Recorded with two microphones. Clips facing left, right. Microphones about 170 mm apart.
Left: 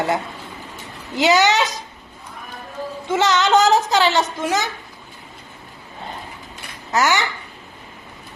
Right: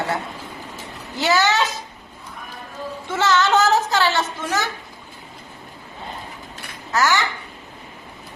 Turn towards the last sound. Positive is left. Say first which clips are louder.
# left 1 dB
turn(degrees=20)  # may be behind; listen again after turning